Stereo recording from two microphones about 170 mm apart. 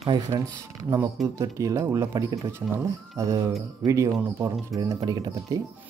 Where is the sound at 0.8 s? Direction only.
20° right (ahead or behind).